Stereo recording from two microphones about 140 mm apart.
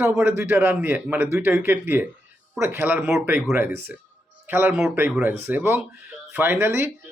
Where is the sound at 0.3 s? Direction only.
15° right (ahead or behind).